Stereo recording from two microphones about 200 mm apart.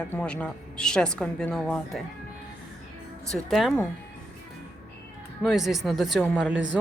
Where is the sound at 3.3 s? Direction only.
Centre (ahead or behind).